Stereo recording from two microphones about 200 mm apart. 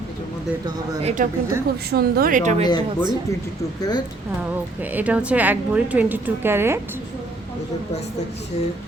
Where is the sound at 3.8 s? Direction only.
20° left (ahead or behind).